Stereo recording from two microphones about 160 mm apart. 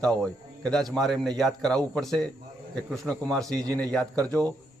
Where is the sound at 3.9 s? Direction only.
5° left (ahead or behind).